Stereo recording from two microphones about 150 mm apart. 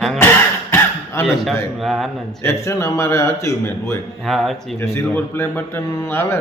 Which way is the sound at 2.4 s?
20° left (ahead or behind).